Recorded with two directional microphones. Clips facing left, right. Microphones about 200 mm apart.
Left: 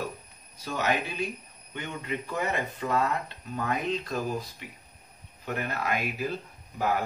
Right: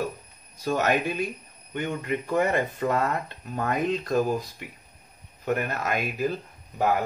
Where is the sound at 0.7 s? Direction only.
50° right (ahead or behind).